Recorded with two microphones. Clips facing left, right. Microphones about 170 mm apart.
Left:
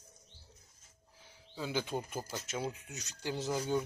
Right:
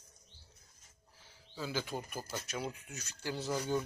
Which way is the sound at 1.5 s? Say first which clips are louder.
Left 2 dB; 15° left (ahead or behind).